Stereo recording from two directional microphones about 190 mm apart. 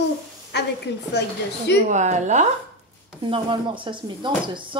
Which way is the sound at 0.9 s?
60° left (ahead or behind).